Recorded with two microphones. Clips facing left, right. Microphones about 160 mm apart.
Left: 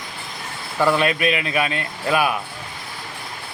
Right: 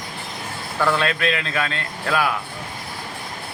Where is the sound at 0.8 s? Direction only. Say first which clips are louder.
Left 3 dB; 15° left (ahead or behind).